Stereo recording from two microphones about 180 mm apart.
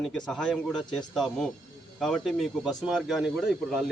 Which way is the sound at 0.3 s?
Centre (ahead or behind).